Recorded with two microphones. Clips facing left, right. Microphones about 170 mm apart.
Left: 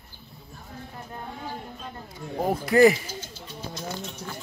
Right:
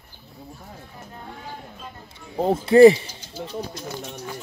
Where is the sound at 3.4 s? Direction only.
65° right (ahead or behind).